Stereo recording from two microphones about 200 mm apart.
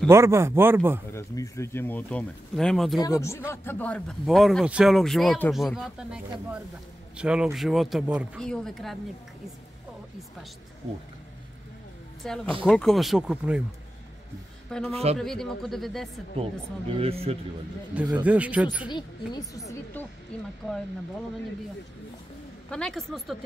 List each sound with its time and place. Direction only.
0.1 s speech: 15° right (ahead or behind)
1.1 s speech: 15° left (ahead or behind)
3.0 s speech: 15° left (ahead or behind)
12.2 s speech: 5° left (ahead or behind)
14.7 s a man's voice: 5° left (ahead or behind)
16.9 s speech: 30° right (ahead or behind)
18.1 s speech: 5° right (ahead or behind)
18.9 s a woman's voice: 20° left (ahead or behind)
19.7 s speech: 10° left (ahead or behind)
22.7 s speech: 5° left (ahead or behind)